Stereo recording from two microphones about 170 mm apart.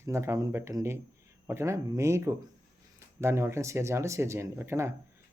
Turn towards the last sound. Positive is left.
turn(degrees=-15)  # may be behind; listen again after turning